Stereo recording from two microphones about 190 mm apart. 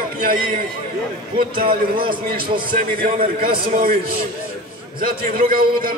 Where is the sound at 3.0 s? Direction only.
50° right (ahead or behind).